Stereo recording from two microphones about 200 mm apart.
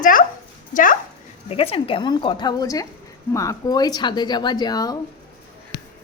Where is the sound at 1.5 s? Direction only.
30° left (ahead or behind).